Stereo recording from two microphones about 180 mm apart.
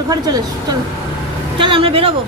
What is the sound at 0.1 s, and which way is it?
A woman's voice, 20° right (ahead or behind).